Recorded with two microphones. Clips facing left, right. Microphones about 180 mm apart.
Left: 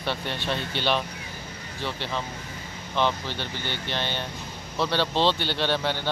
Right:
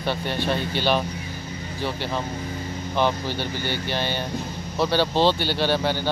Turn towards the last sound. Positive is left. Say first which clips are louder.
# right 4 dB
turn(degrees=-5)  # may be behind; listen again after turning